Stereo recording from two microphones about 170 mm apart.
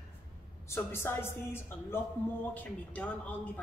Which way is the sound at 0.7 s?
15° left (ahead or behind).